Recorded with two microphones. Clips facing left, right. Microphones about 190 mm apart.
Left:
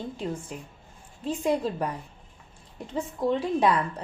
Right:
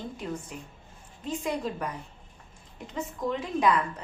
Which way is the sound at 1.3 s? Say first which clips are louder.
Left 5 dB; 35° left (ahead or behind).